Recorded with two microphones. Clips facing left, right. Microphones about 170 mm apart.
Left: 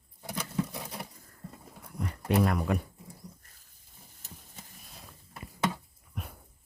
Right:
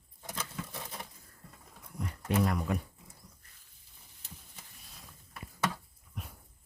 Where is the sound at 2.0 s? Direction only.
65° left (ahead or behind).